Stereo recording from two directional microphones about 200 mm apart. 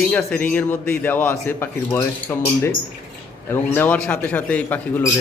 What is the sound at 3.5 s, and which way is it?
A man's voice, 10° left (ahead or behind).